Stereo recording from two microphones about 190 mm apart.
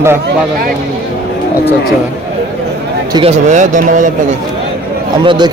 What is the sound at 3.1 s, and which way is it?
Speech, 30° right (ahead or behind).